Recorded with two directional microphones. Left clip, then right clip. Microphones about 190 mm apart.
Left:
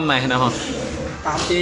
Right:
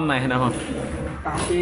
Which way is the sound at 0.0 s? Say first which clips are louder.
Left 4 dB; centre (ahead or behind).